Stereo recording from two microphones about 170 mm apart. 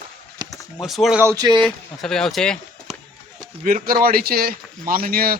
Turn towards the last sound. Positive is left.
turn(degrees=-60)  # may be behind; listen again after turning